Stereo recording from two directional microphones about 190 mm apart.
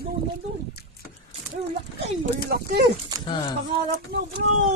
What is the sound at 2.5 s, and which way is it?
Speech, 50° right (ahead or behind).